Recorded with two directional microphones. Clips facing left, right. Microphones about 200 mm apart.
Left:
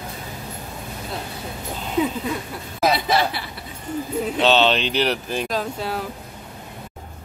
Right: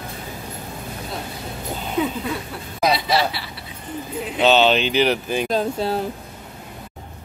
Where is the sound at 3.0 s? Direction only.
50° left (ahead or behind).